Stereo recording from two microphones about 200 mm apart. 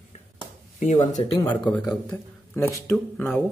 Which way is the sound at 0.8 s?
35° left (ahead or behind).